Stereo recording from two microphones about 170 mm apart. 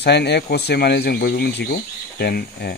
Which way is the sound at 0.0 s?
80° left.